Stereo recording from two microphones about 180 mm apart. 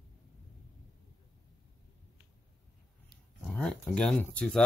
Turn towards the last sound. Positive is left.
turn(degrees=5)  # may be behind; listen again after turning